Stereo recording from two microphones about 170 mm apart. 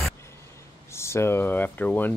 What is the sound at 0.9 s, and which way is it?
Speech, 15° left (ahead or behind).